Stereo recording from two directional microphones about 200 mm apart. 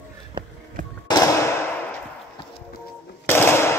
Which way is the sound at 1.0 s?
20° left (ahead or behind).